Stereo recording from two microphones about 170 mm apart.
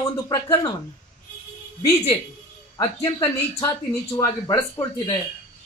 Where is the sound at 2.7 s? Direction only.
20° left (ahead or behind).